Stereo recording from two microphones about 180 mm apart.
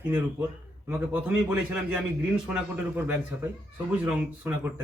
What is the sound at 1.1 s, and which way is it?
Speech, 5° right (ahead or behind).